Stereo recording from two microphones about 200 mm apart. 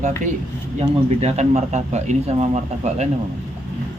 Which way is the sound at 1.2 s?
35° right (ahead or behind).